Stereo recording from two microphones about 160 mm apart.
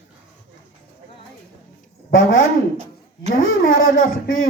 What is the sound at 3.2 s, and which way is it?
Speech, 60° left (ahead or behind).